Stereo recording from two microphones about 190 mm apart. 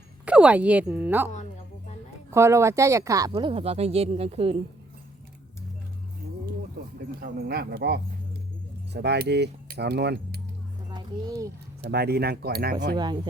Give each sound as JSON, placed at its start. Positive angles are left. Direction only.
{"t": 0.3, "sound": "speech", "side_deg": -5}
{"t": 2.3, "sound": "speech", "side_deg": -15}
{"t": 7.2, "sound": "speech", "side_deg": -55}
{"t": 10.9, "sound": "a child's voice", "side_deg": -20}
{"t": 11.9, "sound": "speech", "side_deg": -55}